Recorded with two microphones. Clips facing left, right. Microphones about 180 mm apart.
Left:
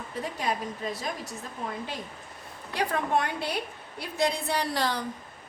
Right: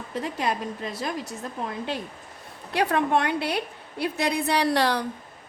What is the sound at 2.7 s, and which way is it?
A woman's voice, 75° right (ahead or behind).